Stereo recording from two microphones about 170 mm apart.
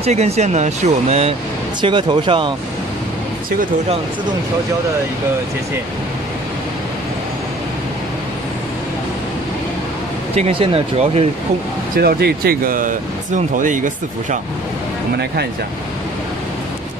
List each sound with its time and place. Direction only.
0.0 s speech: 40° right (ahead or behind)
1.8 s speech: 25° right (ahead or behind)
10.3 s speech: 35° right (ahead or behind)
12.0 s speech: 65° right (ahead or behind); by 14.4 s 50° right (ahead or behind)